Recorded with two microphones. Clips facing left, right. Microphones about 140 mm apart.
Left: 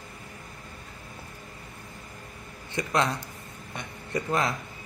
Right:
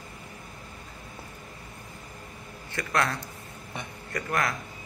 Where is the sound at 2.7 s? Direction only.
20° left (ahead or behind).